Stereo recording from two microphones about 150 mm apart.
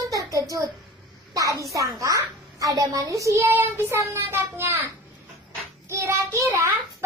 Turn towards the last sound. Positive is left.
turn(degrees=-20)  # may be behind; listen again after turning